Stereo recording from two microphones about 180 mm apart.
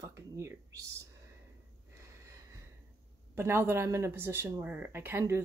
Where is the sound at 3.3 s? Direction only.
15° right (ahead or behind).